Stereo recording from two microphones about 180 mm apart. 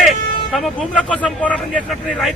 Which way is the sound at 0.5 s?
Centre (ahead or behind).